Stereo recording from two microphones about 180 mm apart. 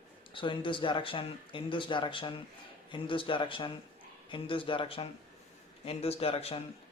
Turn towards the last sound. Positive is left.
turn(degrees=35)  # may be behind; listen again after turning